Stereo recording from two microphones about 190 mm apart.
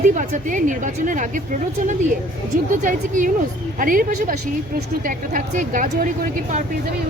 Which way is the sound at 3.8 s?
45° right (ahead or behind).